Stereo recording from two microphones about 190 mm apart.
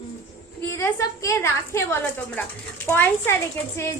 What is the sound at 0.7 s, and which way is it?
A woman's voice, 15° left (ahead or behind).